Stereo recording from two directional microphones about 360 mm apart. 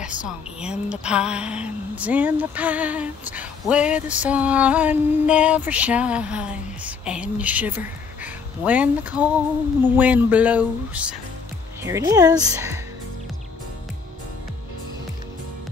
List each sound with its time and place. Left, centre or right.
0.6 s speech: centre